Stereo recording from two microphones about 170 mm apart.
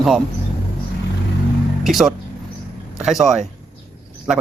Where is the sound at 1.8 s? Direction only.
Centre (ahead or behind).